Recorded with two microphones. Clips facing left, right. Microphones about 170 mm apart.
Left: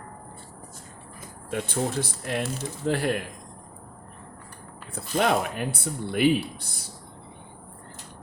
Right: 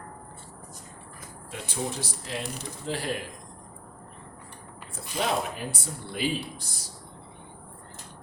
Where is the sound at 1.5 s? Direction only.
55° left (ahead or behind).